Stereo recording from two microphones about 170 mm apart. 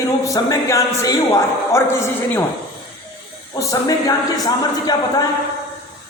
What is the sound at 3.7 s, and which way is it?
Speech, 20° left (ahead or behind).